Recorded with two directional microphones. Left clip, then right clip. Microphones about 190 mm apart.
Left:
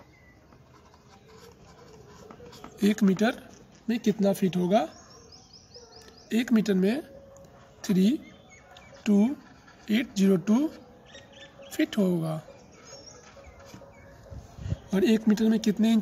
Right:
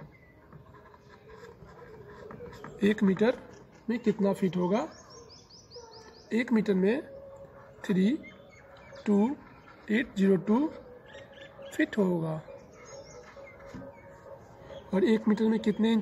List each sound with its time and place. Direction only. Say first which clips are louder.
2.8 s speech: left 1 dB; 45° left (ahead or behind)
6.2 s speech: left 2 dB; 50° left (ahead or behind)
11.7 s speech: left 1 dB; 45° left (ahead or behind)
14.9 s speech: left 2 dB; 50° left (ahead or behind)